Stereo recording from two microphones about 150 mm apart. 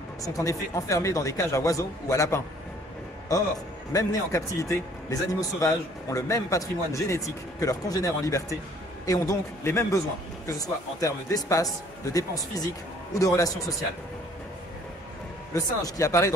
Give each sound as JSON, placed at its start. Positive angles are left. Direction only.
{"t": 0.2, "sound": "speech", "side_deg": 20}
{"t": 3.9, "sound": "speech", "side_deg": 20}
{"t": 15.5, "sound": "speech", "side_deg": 20}